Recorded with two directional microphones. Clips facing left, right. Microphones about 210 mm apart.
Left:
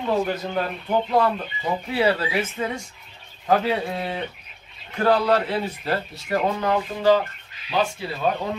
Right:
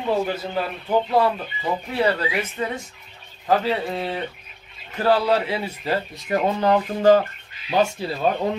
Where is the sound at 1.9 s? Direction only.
5° left (ahead or behind); by 6.4 s 15° right (ahead or behind).